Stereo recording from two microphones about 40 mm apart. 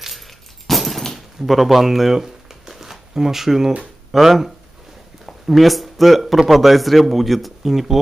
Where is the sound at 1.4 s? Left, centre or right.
Centre.